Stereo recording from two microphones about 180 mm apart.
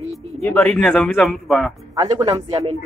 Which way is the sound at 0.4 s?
10° left (ahead or behind).